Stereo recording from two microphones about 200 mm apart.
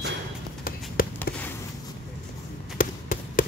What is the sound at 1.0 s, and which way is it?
Basketball bounce, 45° left (ahead or behind).